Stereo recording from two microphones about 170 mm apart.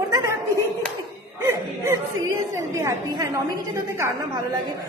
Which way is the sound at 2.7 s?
20° right (ahead or behind).